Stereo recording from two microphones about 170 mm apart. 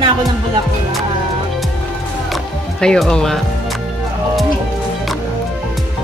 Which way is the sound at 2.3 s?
Centre (ahead or behind).